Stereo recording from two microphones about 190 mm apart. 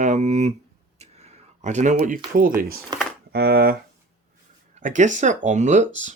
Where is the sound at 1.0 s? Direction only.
35° right (ahead or behind).